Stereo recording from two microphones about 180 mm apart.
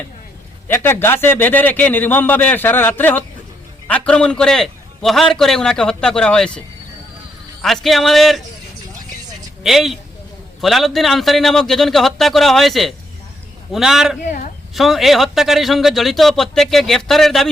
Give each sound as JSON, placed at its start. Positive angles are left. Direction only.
{"t": 0.7, "sound": "a man's voice", "side_deg": 15}
{"t": 7.6, "sound": "a man's voice", "side_deg": 0}
{"t": 9.6, "sound": "a man's voice", "side_deg": 0}
{"t": 14.3, "sound": "a sound", "side_deg": 45}
{"t": 14.8, "sound": "a man's voice", "side_deg": 0}